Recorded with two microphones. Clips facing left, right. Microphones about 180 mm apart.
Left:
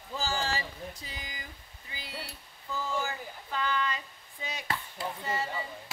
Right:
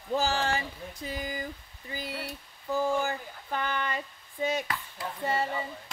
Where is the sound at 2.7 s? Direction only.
50° right (ahead or behind).